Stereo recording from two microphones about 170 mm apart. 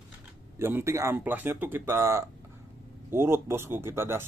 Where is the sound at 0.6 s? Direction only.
15° right (ahead or behind).